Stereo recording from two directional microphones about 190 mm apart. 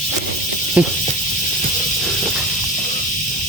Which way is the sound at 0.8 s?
5° right (ahead or behind).